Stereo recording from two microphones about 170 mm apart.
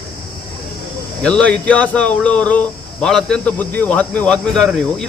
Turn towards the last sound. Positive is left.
turn(degrees=5)  # may be behind; listen again after turning